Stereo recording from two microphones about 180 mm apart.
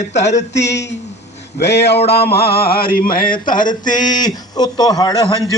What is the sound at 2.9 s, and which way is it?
Speech, 50° left (ahead or behind).